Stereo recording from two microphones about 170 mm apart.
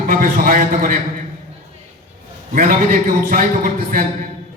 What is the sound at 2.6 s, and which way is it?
A man's voice, 55° right (ahead or behind).